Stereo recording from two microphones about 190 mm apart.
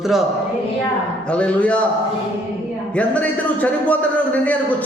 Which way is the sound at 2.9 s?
5° left (ahead or behind).